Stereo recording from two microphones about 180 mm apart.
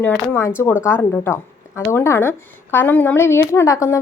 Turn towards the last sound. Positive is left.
turn(degrees=15)  # may be behind; listen again after turning